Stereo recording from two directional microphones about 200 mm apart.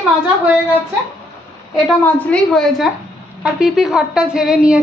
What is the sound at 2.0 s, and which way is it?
A woman's voice, 5° left (ahead or behind).